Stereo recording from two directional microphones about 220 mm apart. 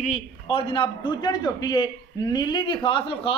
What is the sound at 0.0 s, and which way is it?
A man's voice, 25° left (ahead or behind).